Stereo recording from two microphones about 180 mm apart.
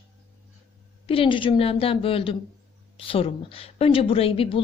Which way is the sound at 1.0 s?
30° left (ahead or behind).